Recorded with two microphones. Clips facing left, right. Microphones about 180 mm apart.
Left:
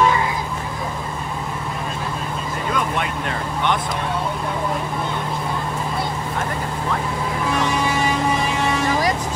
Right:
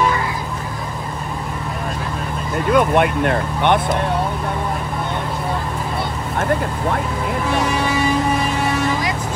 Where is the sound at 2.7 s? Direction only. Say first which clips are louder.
Right 10 dB; 55° right (ahead or behind).